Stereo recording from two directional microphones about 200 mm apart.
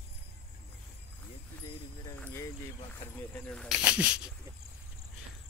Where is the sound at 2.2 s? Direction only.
10° left (ahead or behind).